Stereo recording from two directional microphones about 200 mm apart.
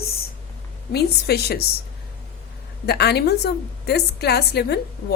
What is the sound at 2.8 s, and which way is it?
A woman's voice, 55° left (ahead or behind).